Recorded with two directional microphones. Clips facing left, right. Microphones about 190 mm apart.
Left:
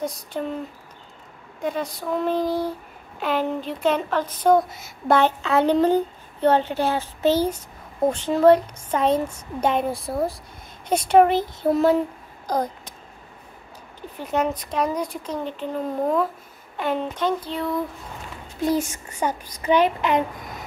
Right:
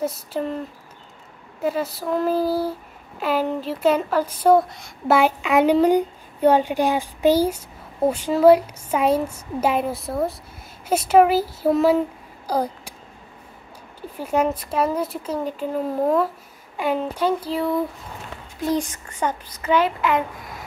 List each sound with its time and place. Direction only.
0.0 s speech: centre (ahead or behind)
5.1 s speech: 10° right (ahead or behind)
12.4 s a sound: 10° right (ahead or behind)
14.1 s speech: 10° right (ahead or behind)
18.7 s a child's voice: 10° left (ahead or behind)